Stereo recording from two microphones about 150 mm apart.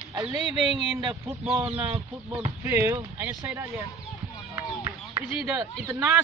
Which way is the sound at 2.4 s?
15° right (ahead or behind).